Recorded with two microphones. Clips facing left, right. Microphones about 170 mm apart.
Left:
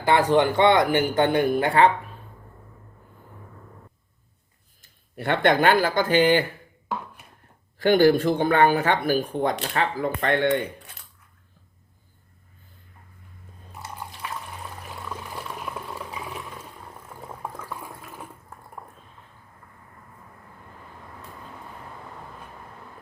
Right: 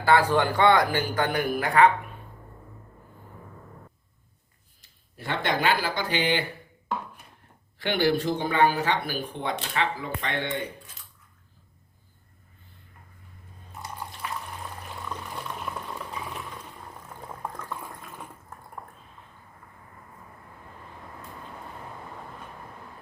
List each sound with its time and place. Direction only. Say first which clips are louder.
0.0 s speech: left 2 dB; 20° left (ahead or behind)
4.8 s speech: left 9 dB; 60° left (ahead or behind)
7.8 s speech: left 7 dB; 45° left (ahead or behind); by 10.9 s 65° left (ahead or behind)
13.7 s water: even; centre (ahead or behind)
17.2 s boiling: left 1 dB; 10° left (ahead or behind)